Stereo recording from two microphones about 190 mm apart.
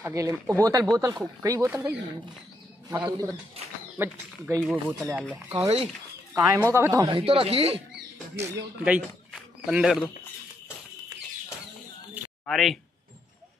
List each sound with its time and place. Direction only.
0.0 s speech: 15° right (ahead or behind)
6.3 s speech: 15° right (ahead or behind)
7.2 s speech: 30° right (ahead or behind)
8.4 s a man's voice: 10° right (ahead or behind)
12.4 s speech: centre (ahead or behind)